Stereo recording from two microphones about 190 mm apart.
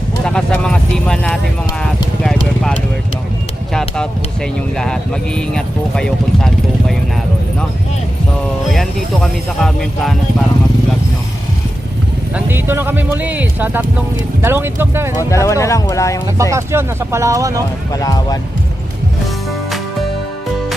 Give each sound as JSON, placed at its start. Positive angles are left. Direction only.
{"t": 0.3, "sound": "speech", "side_deg": 5}
{"t": 2.2, "sound": "clip-clop", "side_deg": 5}
{"t": 3.7, "sound": "speech", "side_deg": 5}
{"t": 8.7, "sound": "speech", "side_deg": 0}
{"t": 12.3, "sound": "speech", "side_deg": -10}
{"t": 15.2, "sound": "speech", "side_deg": 15}
{"t": 16.4, "sound": "speech", "side_deg": -15}
{"t": 17.9, "sound": "speech", "side_deg": 20}